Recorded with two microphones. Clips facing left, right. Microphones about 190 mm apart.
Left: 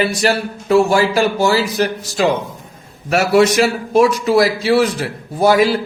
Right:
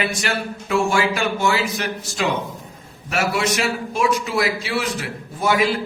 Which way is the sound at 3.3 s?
40° left (ahead or behind).